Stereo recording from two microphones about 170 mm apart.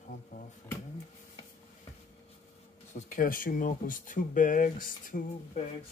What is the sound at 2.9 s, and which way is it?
Speech, 50° left (ahead or behind).